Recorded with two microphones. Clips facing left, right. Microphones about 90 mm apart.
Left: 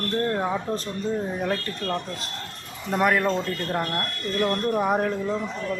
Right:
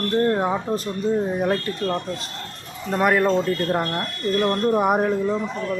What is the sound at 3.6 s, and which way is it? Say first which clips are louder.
Speech: right 4 dB; 10° right (ahead or behind).